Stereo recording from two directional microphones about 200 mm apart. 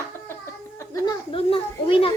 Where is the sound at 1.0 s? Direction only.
25° left (ahead or behind).